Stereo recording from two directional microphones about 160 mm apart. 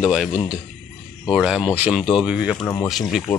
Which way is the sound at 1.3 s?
5° right (ahead or behind).